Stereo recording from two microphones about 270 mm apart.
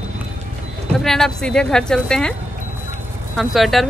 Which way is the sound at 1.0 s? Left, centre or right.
Centre.